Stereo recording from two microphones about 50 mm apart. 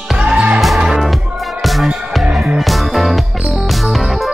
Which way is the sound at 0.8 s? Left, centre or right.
Centre.